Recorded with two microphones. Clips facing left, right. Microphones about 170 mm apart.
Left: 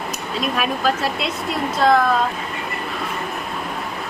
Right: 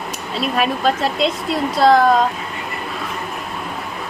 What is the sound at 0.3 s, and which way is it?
Speech, 35° right (ahead or behind).